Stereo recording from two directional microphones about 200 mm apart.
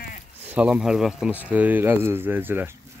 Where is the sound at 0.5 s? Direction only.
5° right (ahead or behind).